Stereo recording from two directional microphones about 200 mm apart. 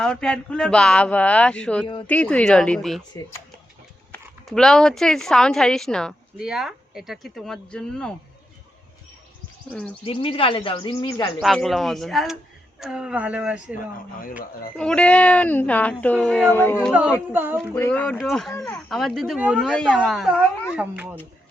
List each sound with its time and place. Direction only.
0.0 s speech: 5° left (ahead or behind)
4.1 s speech: 5° left (ahead or behind)
9.6 s speech: 5° left (ahead or behind)
10.0 s speech: 25° left (ahead or behind)
11.3 s speech: centre (ahead or behind)
14.8 s speech: 5° left (ahead or behind)
17.3 s speech: 10° right (ahead or behind)
17.7 s speech: 10° left (ahead or behind)
18.5 s speech: 15° left (ahead or behind)
18.9 s speech: centre (ahead or behind)